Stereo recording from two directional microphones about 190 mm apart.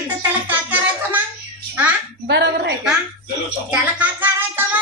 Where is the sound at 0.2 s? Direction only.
10° right (ahead or behind).